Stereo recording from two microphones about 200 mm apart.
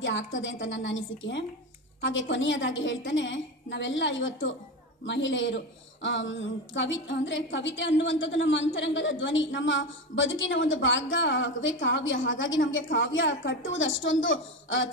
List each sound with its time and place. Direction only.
0.0 s a woman's voice: 65° left (ahead or behind)